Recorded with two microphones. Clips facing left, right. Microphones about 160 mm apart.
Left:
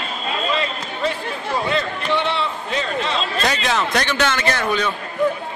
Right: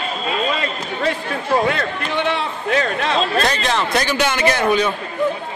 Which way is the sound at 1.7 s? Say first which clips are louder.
Even; 50° right (ahead or behind).